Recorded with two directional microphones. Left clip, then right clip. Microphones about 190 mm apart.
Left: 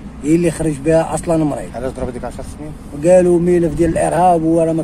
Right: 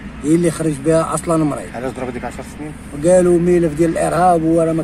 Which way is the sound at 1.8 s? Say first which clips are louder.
Left 1 dB; 35° left (ahead or behind).